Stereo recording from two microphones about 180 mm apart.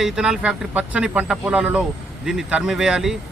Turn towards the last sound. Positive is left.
turn(degrees=-5)  # may be behind; listen again after turning